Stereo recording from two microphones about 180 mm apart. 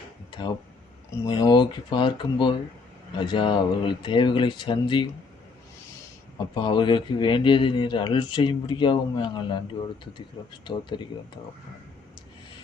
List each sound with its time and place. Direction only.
0.3 s a sound: 25° left (ahead or behind)
1.2 s speech: 20° left (ahead or behind)
6.5 s speech: 25° left (ahead or behind)